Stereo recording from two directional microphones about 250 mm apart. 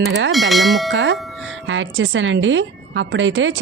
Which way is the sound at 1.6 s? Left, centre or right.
Right.